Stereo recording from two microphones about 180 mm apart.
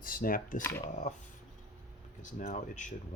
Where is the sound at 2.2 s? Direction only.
45° left (ahead or behind).